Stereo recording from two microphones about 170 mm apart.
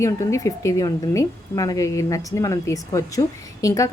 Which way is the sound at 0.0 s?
20° left (ahead or behind).